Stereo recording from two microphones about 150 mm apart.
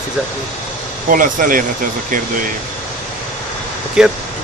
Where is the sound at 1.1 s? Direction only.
65° right (ahead or behind).